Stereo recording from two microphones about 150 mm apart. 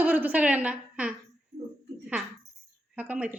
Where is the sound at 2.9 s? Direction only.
10° right (ahead or behind).